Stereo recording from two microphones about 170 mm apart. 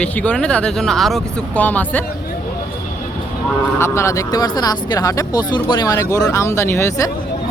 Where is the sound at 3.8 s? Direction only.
15° left (ahead or behind).